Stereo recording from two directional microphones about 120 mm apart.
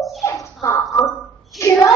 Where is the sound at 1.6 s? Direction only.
25° left (ahead or behind).